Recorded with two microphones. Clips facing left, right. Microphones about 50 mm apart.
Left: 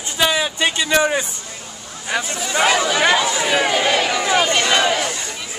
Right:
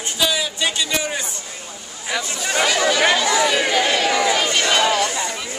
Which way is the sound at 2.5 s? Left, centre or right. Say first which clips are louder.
Left 1 dB; left.